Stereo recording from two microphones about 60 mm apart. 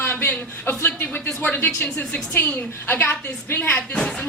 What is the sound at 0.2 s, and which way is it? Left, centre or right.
Speech, left.